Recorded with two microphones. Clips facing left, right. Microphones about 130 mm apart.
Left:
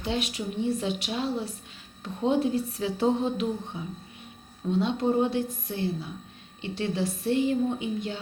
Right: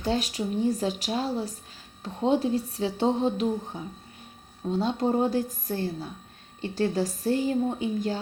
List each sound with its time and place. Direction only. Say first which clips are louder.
0.0 s a woman's voice: right 3 dB; 35° right (ahead or behind)